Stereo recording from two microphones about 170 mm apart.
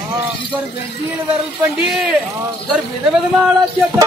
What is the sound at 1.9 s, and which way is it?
Speech, centre (ahead or behind).